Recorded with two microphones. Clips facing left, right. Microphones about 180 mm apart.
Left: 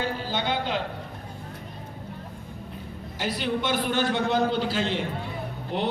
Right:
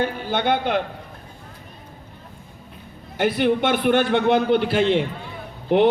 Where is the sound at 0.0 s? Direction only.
55° right (ahead or behind).